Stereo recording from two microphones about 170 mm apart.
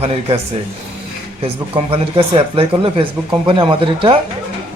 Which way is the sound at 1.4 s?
35° right (ahead or behind).